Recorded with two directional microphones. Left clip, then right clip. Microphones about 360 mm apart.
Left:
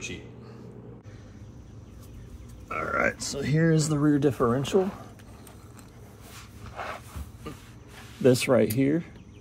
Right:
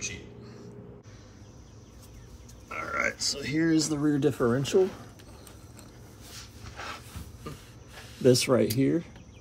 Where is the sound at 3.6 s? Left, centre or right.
Left.